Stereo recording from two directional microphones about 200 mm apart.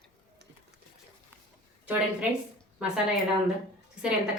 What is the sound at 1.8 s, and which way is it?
Speech, 10° right (ahead or behind).